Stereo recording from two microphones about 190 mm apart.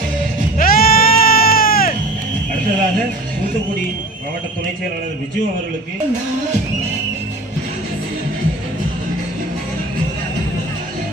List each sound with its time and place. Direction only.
0.6 s music: 50° left (ahead or behind)